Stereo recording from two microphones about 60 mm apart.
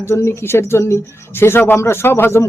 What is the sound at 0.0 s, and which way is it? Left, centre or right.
Speech, left.